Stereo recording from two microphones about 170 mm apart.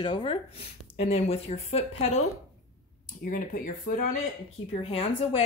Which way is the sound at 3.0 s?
50° left (ahead or behind).